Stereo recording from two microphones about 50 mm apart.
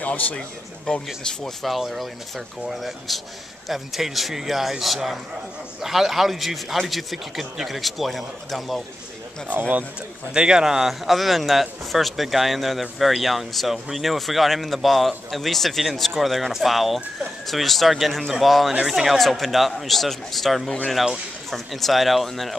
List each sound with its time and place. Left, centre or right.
0.0 s speech: left
1.0 s a man's voice: centre
9.5 s speech: right
10.3 s a man's voice: centre